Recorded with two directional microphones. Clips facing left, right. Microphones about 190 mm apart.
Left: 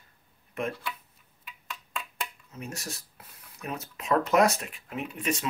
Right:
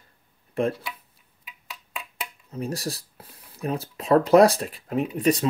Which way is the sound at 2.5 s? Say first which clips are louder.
Right 15 dB; 35° right (ahead or behind).